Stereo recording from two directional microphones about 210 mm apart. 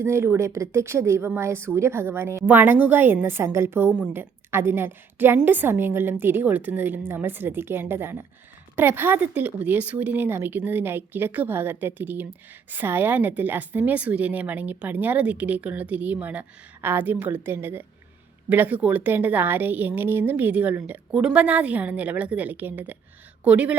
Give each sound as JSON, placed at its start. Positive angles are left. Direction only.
{"t": 0.0, "sound": "speech", "side_deg": -10}